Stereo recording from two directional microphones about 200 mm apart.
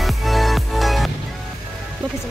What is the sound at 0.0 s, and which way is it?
Music, centre (ahead or behind).